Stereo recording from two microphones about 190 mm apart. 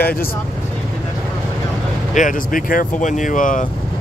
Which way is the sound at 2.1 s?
45° left (ahead or behind).